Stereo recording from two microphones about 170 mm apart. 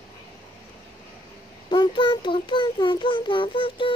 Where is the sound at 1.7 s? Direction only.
30° left (ahead or behind).